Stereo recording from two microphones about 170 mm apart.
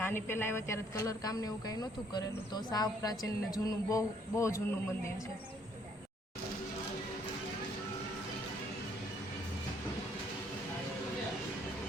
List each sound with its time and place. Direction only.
0.0 s speech: 15° left (ahead or behind)